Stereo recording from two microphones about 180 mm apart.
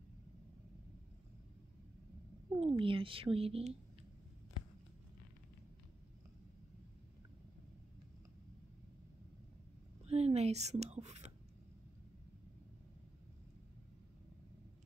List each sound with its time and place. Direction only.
2.6 s speech: 30° right (ahead or behind)
10.0 s whispering: 35° right (ahead or behind)